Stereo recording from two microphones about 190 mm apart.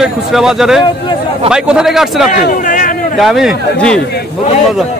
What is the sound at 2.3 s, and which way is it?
Speech, 45° left (ahead or behind).